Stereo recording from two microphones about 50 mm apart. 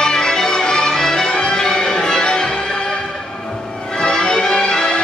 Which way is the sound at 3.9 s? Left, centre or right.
Centre.